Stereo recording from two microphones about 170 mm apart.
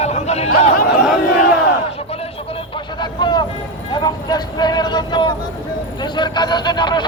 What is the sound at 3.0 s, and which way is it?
Vehicle, 25° left (ahead or behind).